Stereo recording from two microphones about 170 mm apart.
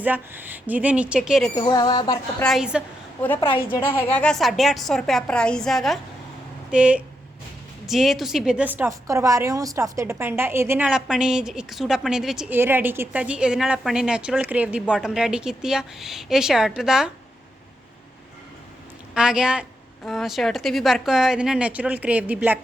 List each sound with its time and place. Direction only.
0.0 s speech: 10° right (ahead or behind)
1.5 s speech: 25° left (ahead or behind)
2.4 s a woman's voice: centre (ahead or behind)
4.1 s a woman's voice: 5° left (ahead or behind)
19.1 s a woman's voice: 5° right (ahead or behind)